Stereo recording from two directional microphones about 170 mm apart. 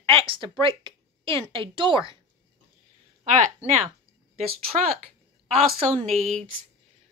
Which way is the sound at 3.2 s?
40° right (ahead or behind).